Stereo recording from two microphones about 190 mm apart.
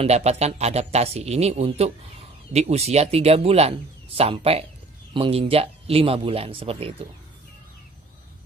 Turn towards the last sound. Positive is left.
turn(degrees=-30)  # may be behind; listen again after turning